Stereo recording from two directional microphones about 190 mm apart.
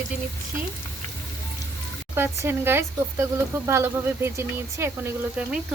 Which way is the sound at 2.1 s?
10° right (ahead or behind).